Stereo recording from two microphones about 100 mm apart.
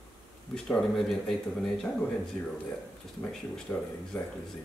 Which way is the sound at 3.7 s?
20° left (ahead or behind).